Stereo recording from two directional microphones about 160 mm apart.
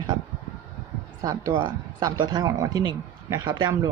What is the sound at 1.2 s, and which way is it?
Speech, 20° right (ahead or behind).